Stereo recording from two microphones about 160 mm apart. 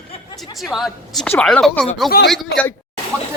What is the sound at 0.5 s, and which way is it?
A woman's voice, centre (ahead or behind).